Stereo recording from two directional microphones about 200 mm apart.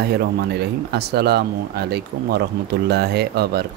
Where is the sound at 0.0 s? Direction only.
50° right (ahead or behind).